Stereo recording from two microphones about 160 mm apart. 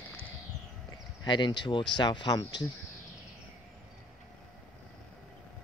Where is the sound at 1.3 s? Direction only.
30° left (ahead or behind).